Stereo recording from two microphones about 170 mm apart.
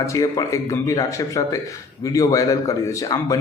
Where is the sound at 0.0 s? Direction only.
20° left (ahead or behind).